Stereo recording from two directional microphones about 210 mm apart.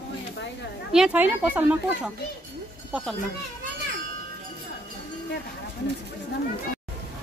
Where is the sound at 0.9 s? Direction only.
5° right (ahead or behind).